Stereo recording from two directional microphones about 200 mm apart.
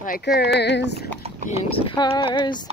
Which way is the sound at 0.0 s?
50° left (ahead or behind).